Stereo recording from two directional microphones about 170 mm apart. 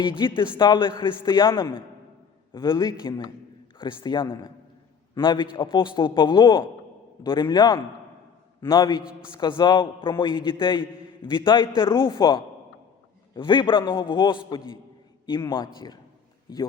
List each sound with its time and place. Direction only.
0.0 s a man's voice: 30° left (ahead or behind)